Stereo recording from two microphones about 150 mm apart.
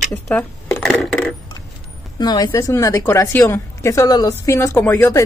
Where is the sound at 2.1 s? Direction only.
25° left (ahead or behind).